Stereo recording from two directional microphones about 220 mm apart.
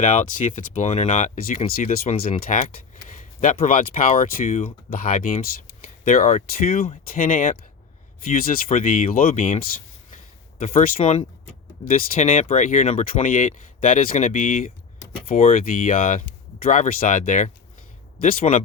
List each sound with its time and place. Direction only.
0.0 s speech: 35° left (ahead or behind)
7.1 s speech: 40° left (ahead or behind)
10.6 s speech: 35° left (ahead or behind)